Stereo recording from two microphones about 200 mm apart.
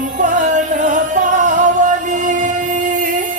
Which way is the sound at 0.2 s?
40° right (ahead or behind).